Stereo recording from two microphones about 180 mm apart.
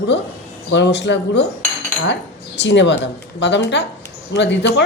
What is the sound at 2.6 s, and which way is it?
A woman's voice, 80° left.